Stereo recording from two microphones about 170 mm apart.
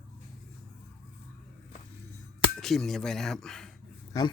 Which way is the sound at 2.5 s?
Centre (ahead or behind).